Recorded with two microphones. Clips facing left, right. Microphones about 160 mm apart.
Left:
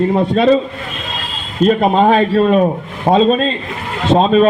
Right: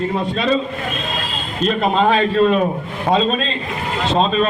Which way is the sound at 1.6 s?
50° left (ahead or behind).